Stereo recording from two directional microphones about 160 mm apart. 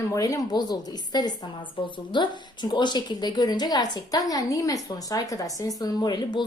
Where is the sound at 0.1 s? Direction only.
20° left (ahead or behind).